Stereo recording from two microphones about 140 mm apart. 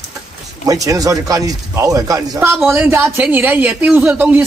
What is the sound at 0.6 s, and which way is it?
Speech, 25° right (ahead or behind).